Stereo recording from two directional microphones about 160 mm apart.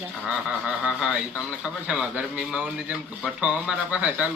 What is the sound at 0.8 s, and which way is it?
A man's voice, 5° right (ahead or behind).